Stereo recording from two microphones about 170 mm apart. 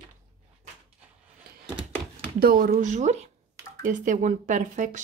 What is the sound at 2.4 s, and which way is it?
Speech, 60° right (ahead or behind).